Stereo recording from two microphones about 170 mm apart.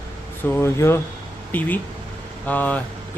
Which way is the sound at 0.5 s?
15° left (ahead or behind).